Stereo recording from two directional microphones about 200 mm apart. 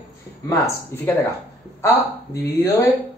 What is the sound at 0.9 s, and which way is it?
Speech, 10° left (ahead or behind).